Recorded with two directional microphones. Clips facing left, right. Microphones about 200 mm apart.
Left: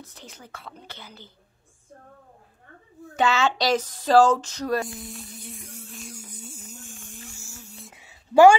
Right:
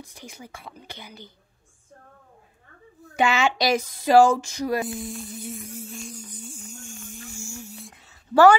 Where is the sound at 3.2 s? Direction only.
15° right (ahead or behind).